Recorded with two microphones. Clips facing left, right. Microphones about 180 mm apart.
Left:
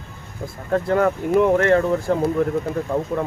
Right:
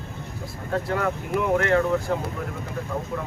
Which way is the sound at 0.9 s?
40° left (ahead or behind).